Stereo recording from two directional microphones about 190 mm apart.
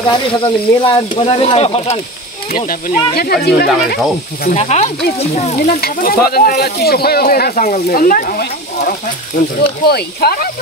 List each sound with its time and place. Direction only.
0.1 s speech: 25° left (ahead or behind)
2.5 s speech: 45° left (ahead or behind)
3.2 s speech: 55° left (ahead or behind)
4.5 s speech: 35° left (ahead or behind)
5.7 s speech: 50° left (ahead or behind)